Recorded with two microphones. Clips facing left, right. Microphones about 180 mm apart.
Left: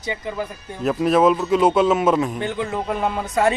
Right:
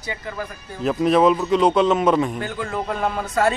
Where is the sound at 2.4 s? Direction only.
20° left (ahead or behind).